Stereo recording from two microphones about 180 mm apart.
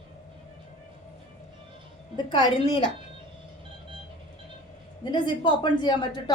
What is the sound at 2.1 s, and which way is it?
Speech, 25° left (ahead or behind).